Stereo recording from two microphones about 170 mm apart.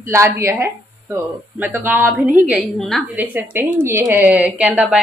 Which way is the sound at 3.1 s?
10° right (ahead or behind).